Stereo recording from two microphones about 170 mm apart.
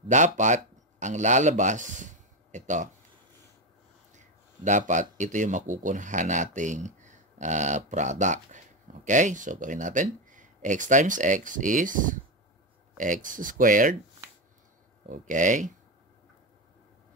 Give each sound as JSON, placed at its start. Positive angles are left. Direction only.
{"t": 0.1, "sound": "speech", "side_deg": -45}
{"t": 4.1, "sound": "speech", "side_deg": -45}
{"t": 15.0, "sound": "speech", "side_deg": -50}